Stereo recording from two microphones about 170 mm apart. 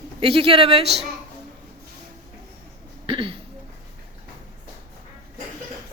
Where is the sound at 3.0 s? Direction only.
30° right (ahead or behind).